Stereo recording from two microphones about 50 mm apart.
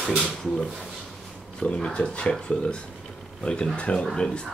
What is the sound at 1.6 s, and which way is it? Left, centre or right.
Speech, left.